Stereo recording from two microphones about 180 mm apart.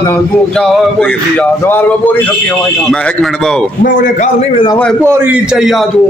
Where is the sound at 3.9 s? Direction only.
45° left (ahead or behind).